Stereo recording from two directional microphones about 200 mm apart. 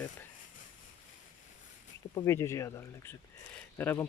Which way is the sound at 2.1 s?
15° left (ahead or behind).